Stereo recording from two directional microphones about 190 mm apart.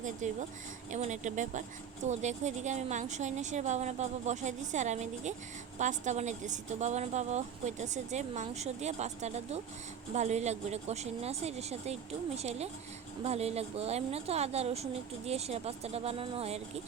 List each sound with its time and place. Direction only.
0.0 s a woman's voice: 40° right (ahead or behind)